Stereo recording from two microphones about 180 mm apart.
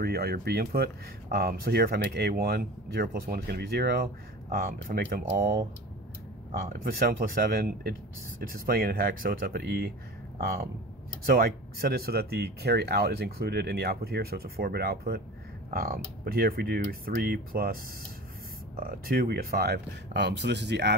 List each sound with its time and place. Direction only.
0.0 s speech: 60° right (ahead or behind)
6.7 s speech: 55° right (ahead or behind)
18.8 s speech: 55° right (ahead or behind); by 20.9 s 70° right (ahead or behind)